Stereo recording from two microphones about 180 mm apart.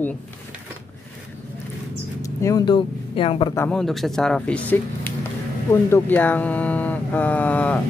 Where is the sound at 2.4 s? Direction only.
25° left (ahead or behind).